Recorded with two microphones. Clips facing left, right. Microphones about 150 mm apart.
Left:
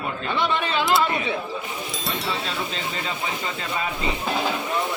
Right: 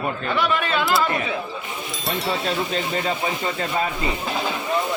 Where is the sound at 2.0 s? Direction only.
Centre (ahead or behind).